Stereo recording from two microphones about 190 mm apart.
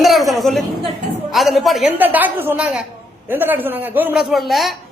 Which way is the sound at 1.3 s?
Centre (ahead or behind).